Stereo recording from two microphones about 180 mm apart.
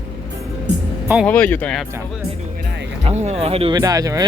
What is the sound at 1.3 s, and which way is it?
Speech, 10° left (ahead or behind).